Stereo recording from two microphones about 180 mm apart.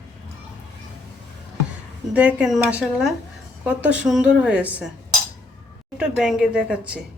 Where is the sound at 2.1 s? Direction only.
5° right (ahead or behind).